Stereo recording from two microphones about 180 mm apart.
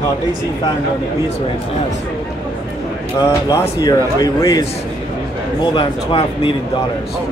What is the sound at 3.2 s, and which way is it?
Speech, 20° left (ahead or behind).